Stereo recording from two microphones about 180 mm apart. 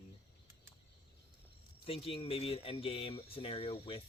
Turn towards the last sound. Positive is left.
turn(degrees=30)  # may be behind; listen again after turning